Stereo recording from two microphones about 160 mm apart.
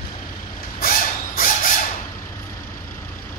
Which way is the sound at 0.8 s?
65° left (ahead or behind).